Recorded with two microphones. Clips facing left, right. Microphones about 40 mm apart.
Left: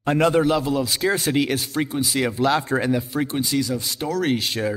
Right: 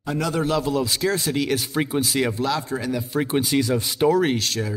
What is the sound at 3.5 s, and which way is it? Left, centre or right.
Speech, right.